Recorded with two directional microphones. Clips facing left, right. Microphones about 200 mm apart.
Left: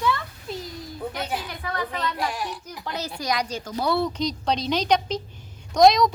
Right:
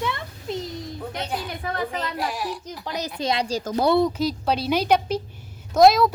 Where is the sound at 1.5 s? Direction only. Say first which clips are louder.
Right 2 dB; 25° right (ahead or behind).